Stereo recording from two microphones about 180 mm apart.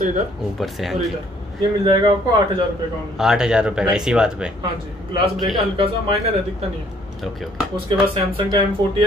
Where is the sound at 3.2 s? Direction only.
5° right (ahead or behind).